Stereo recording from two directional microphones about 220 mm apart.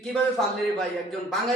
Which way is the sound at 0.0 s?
Centre (ahead or behind).